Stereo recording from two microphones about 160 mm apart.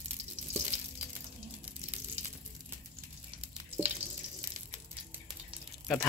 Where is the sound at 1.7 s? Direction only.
10° right (ahead or behind).